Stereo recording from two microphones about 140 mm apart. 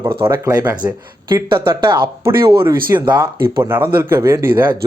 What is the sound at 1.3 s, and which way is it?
Speech, 35° right (ahead or behind).